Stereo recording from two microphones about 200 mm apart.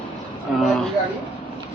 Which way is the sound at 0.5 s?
Centre (ahead or behind).